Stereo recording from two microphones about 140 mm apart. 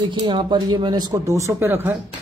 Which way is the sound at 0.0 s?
35° right (ahead or behind).